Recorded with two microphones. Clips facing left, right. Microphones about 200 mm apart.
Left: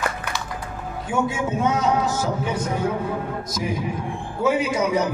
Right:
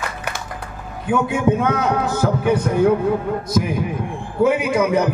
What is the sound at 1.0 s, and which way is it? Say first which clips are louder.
A man's voice: right 6 dB; 60° right (ahead or behind).